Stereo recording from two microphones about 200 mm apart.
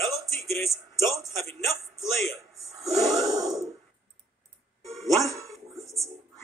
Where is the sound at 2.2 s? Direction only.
Centre (ahead or behind).